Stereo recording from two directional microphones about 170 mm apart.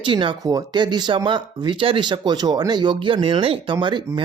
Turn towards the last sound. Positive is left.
turn(degrees=-25)  # may be behind; listen again after turning